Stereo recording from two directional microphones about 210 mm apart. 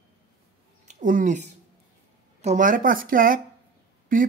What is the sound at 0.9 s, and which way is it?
Speech, 40° right (ahead or behind).